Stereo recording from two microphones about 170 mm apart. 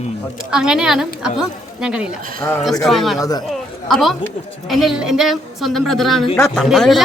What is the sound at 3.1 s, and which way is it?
Speech, 20° left (ahead or behind).